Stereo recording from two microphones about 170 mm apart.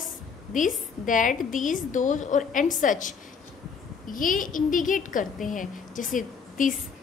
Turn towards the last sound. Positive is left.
turn(degrees=50)  # may be behind; listen again after turning